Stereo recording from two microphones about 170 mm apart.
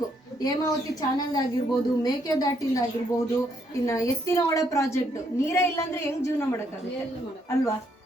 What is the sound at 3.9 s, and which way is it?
A woman's voice, 20° left (ahead or behind).